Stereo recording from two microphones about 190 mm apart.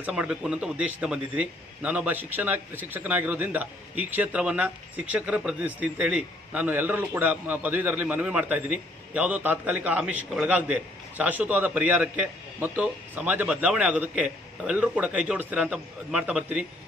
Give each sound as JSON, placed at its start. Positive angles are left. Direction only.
{"t": 0.0, "sound": "a man's voice", "side_deg": -5}